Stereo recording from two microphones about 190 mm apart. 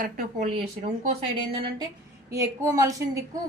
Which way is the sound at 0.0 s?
40° right (ahead or behind).